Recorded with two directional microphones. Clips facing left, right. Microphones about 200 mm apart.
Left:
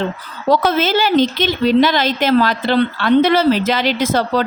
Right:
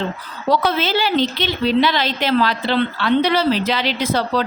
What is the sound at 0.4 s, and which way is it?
A woman's voice, 45° left (ahead or behind).